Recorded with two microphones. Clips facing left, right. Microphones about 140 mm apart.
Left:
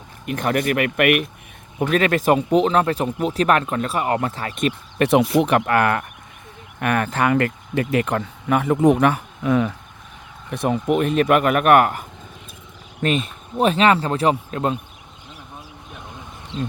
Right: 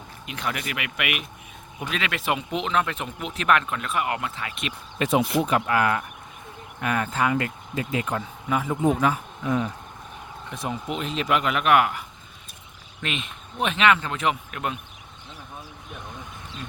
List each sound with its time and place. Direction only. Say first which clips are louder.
0.3 s a man's voice: left 10 dB; 50° left (ahead or behind)
4.9 s speech: left 6 dB; 70° left (ahead or behind); by 9.6 s 90° left
10.5 s a man's voice: left 10 dB; 60° left (ahead or behind); by 14.8 s 30° left (ahead or behind)